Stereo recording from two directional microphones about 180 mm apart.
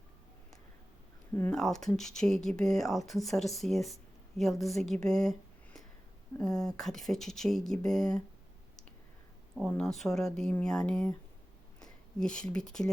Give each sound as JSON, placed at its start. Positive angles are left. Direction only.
{"t": 1.3, "sound": "speech", "side_deg": 10}
{"t": 6.3, "sound": "speech", "side_deg": 20}
{"t": 6.7, "sound": "speech", "side_deg": 0}
{"t": 9.6, "sound": "speech", "side_deg": 0}